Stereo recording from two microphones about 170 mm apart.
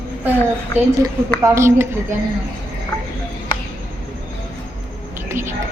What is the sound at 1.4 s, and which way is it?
Speech, 15° right (ahead or behind).